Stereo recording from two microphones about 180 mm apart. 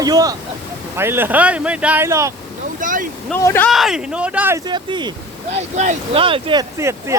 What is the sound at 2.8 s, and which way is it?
Speech, 45° right (ahead or behind).